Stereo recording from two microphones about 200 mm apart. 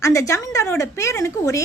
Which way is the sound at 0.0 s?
15° left (ahead or behind).